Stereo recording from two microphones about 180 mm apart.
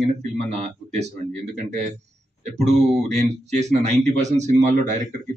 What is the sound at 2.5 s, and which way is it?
Speech, 40° right (ahead or behind).